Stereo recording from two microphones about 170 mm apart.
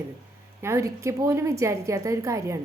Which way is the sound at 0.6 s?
15° right (ahead or behind).